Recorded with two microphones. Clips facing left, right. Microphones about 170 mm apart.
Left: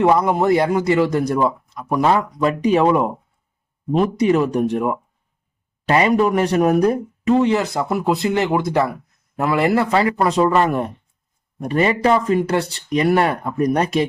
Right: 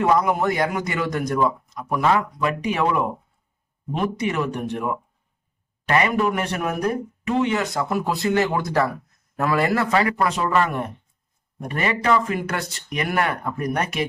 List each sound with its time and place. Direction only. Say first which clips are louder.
0.0 s a man's voice: left 4 dB; 30° left (ahead or behind)
5.9 s a man's voice: left 5 dB; 30° left (ahead or behind)